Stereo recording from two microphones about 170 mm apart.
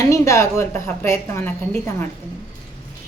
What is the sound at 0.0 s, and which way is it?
A woman's voice, 20° left (ahead or behind).